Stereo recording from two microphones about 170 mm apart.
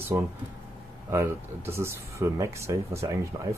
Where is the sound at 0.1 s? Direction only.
15° right (ahead or behind).